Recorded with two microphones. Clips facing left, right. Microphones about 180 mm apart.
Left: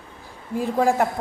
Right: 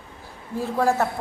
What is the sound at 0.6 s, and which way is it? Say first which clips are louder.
Speech: left 2 dB; 15° left (ahead or behind).